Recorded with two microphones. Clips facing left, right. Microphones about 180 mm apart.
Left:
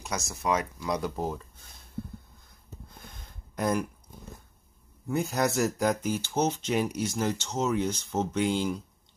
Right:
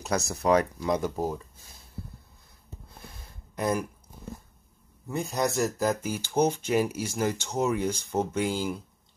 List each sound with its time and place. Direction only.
0.3 s speech: 35° right (ahead or behind)
1.1 s speech: 10° right (ahead or behind)
3.5 s speech: 5° right (ahead or behind)
5.0 s speech: centre (ahead or behind)